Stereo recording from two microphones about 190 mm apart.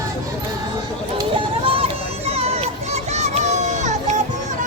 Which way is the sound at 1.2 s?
25° right (ahead or behind).